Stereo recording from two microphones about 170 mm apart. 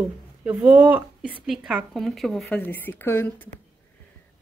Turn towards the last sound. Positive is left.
turn(degrees=15)  # may be behind; listen again after turning